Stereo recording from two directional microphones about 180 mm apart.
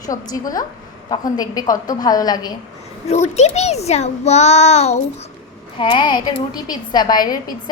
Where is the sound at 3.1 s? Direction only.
35° left (ahead or behind).